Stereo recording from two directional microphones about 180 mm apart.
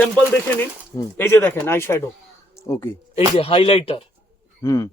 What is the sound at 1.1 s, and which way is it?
Speech, 10° left (ahead or behind).